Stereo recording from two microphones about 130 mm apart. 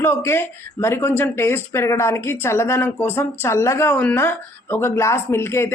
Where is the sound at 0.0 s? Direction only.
20° left (ahead or behind).